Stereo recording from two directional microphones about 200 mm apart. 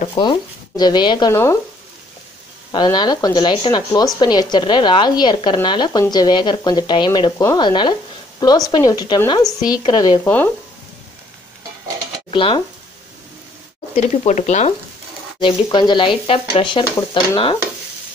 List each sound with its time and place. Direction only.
0.0 s speech: 25° left (ahead or behind)
2.7 s speech: 20° left (ahead or behind)
12.3 s stir: 25° left (ahead or behind)
13.9 s speech: 35° left (ahead or behind)
15.4 s speech: 25° left (ahead or behind)